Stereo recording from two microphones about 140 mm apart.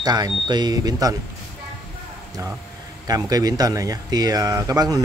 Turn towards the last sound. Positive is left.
turn(degrees=-25)  # may be behind; listen again after turning